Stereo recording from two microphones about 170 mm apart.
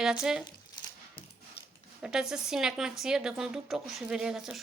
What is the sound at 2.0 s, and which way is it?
Speech, 5° right (ahead or behind).